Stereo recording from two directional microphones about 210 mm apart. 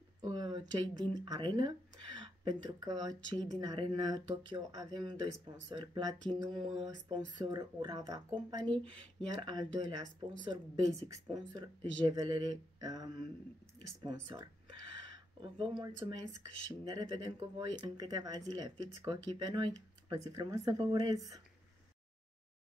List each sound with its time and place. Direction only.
0.2 s speech: 20° right (ahead or behind)
14.2 s a sound: 20° right (ahead or behind)
15.4 s speech: 25° right (ahead or behind)